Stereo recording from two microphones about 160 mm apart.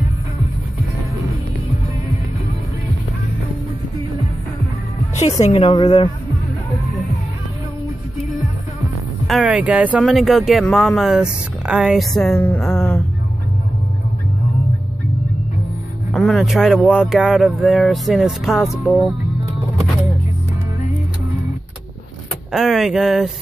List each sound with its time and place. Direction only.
5.4 s a woman's voice: 40° left (ahead or behind)
9.3 s speech: 5° right (ahead or behind)
12.5 s music: 5° left (ahead or behind)
16.1 s speech: centre (ahead or behind)
22.5 s speech: centre (ahead or behind)